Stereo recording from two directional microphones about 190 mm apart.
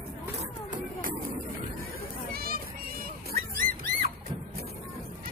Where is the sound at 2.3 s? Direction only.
50° right (ahead or behind).